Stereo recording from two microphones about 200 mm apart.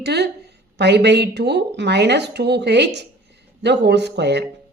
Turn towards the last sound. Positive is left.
turn(degrees=-55)  # may be behind; listen again after turning